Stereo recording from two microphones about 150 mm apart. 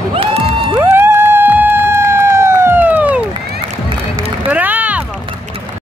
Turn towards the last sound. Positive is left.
turn(degrees=-10)  # may be behind; listen again after turning